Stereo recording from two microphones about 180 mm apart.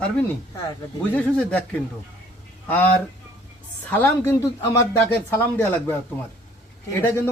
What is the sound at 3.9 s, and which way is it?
Speech, 10° left (ahead or behind).